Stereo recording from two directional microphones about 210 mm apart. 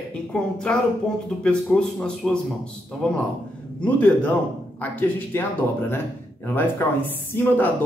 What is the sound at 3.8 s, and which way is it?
Speech, 5° left (ahead or behind).